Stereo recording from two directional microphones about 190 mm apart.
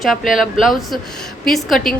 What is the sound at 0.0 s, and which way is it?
Speech, centre (ahead or behind).